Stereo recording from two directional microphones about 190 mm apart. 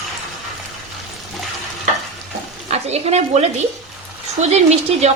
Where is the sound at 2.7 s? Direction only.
35° right (ahead or behind).